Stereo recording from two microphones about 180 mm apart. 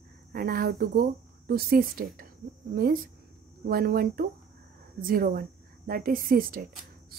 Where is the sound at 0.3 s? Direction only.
55° right (ahead or behind).